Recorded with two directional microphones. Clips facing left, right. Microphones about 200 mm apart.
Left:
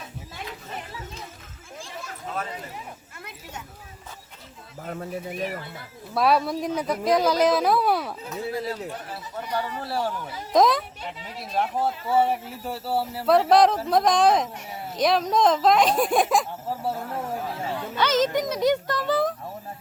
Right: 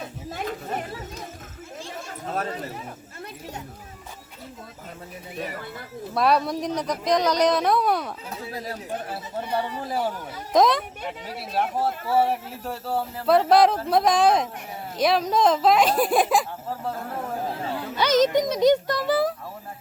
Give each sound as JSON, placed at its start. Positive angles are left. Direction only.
{"t": 0.3, "sound": "chatter", "side_deg": -50}
{"t": 6.1, "sound": "speech", "side_deg": 0}
{"t": 8.3, "sound": "speech", "side_deg": -35}
{"t": 9.8, "sound": "a child's voice", "side_deg": -10}
{"t": 10.5, "sound": "speech", "side_deg": 0}
{"t": 17.9, "sound": "a child's voice", "side_deg": -15}